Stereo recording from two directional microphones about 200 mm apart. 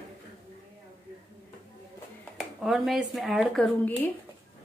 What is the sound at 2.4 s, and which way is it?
Speech, centre (ahead or behind).